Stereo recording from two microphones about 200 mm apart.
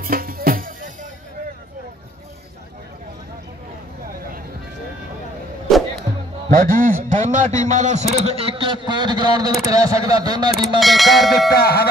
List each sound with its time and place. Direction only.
0.0 s music: 45° right (ahead or behind)
6.1 s music: 15° right (ahead or behind)
6.5 s a man's voice: 45° right (ahead or behind); by 10.8 s 20° right (ahead or behind)
10.8 s speech: centre (ahead or behind)
11.5 s music: 50° left (ahead or behind)